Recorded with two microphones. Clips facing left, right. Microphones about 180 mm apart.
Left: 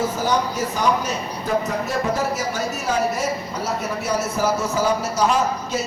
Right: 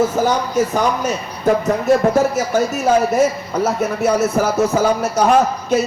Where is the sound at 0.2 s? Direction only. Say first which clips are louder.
Right 5 dB; 50° right (ahead or behind).